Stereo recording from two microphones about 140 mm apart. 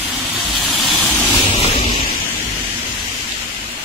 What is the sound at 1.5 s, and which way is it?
Waves, 45° left (ahead or behind).